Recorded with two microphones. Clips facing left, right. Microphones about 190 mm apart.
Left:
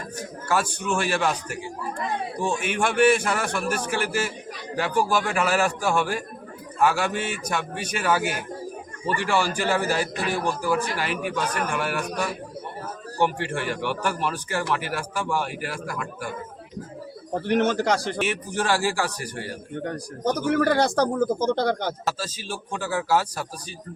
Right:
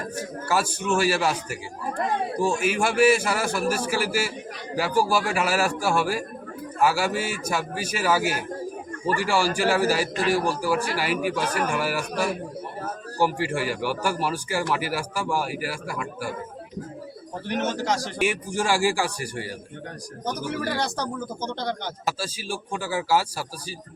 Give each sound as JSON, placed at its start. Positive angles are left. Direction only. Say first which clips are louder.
{"t": 0.2, "sound": "a man's voice", "louder": "even", "side_deg": -5}
{"t": 17.5, "sound": "a man's voice", "louder": "left 4 dB", "side_deg": 60}
{"t": 18.2, "sound": "a man's voice", "louder": "right 1 dB", "side_deg": -10}
{"t": 20.5, "sound": "speech", "louder": "left 9 dB", "side_deg": 55}
{"t": 22.0, "sound": "a man's voice", "louder": "even", "side_deg": -10}